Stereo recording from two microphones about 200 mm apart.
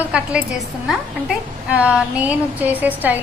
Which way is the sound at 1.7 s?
5° right (ahead or behind).